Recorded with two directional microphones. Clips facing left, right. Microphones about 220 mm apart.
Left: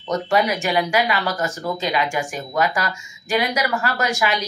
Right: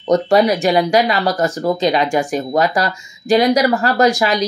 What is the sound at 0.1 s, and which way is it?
Speech, 35° right (ahead or behind).